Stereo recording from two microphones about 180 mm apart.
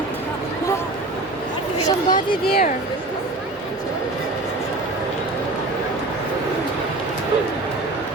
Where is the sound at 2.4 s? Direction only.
60° left (ahead or behind).